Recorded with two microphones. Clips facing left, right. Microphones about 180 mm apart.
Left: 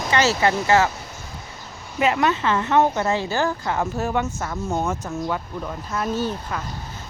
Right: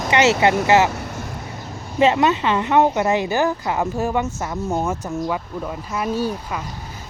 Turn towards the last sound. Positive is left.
turn(degrees=-10)  # may be behind; listen again after turning